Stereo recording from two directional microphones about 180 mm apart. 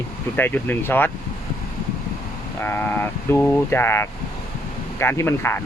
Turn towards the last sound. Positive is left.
turn(degrees=10)  # may be behind; listen again after turning